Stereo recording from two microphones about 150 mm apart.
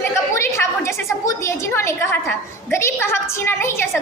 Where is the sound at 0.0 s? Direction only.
15° left (ahead or behind).